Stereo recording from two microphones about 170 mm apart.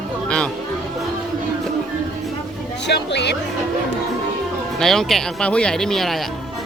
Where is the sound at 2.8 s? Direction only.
90° left.